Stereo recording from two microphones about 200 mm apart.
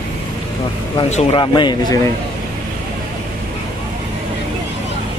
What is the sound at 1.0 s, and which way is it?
Speech, 35° left (ahead or behind).